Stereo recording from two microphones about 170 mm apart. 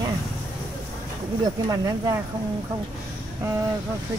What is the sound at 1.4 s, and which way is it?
Speech, 25° right (ahead or behind).